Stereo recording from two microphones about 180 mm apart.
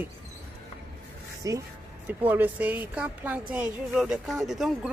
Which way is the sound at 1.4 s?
20° right (ahead or behind).